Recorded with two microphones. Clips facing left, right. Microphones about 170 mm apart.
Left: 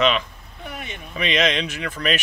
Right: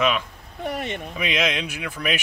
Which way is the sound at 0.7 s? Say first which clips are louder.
Right 7 dB; 65° right (ahead or behind).